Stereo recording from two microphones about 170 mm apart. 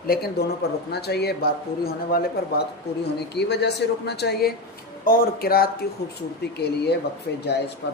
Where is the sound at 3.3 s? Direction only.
80° left; by 5.6 s 60° left (ahead or behind).